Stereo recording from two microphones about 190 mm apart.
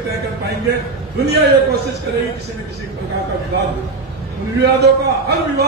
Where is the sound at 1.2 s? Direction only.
60° right (ahead or behind).